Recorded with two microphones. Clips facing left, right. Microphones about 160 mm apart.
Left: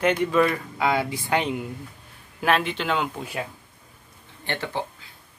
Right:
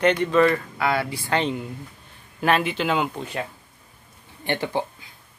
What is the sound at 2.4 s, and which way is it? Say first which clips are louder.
Speech: right 2 dB; centre (ahead or behind).